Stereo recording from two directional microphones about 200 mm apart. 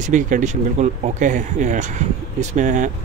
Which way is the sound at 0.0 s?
40° right (ahead or behind).